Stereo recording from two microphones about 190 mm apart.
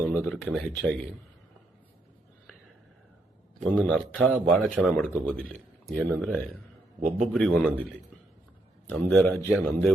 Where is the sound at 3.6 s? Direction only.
Centre (ahead or behind).